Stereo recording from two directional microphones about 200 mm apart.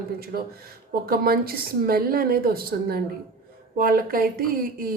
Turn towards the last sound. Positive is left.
turn(degrees=-45)  # may be behind; listen again after turning